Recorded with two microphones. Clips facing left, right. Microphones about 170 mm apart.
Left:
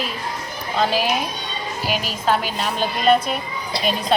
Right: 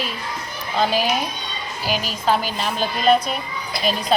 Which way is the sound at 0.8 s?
Centre (ahead or behind).